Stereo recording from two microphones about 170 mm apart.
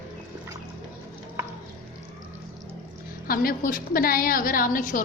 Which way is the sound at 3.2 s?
60° left (ahead or behind).